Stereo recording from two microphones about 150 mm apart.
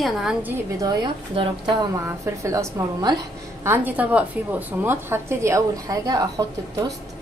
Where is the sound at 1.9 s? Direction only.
20° right (ahead or behind).